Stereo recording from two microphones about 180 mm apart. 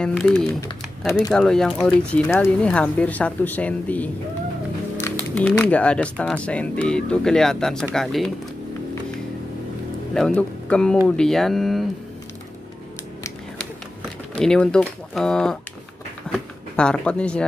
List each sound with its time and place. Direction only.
0.0 s speech: 5° left (ahead or behind)
0.6 s speech: 20° left (ahead or behind)
1.3 s speech: 5° left (ahead or behind)
5.3 s speech: 5° left (ahead or behind)
10.1 s speech: 5° left (ahead or behind)
14.3 s speech: 5° left (ahead or behind)